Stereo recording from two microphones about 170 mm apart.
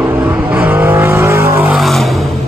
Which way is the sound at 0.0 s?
10° right (ahead or behind).